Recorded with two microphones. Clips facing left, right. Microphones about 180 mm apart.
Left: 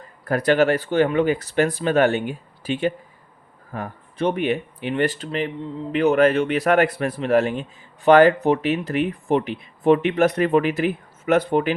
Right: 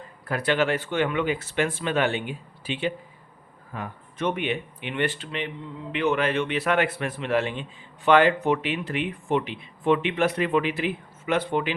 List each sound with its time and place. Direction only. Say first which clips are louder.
0.3 s a man's voice: left 6 dB; 45° left (ahead or behind)